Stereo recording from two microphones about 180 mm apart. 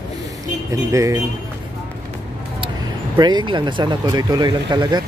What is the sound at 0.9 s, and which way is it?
Speech, 15° right (ahead or behind).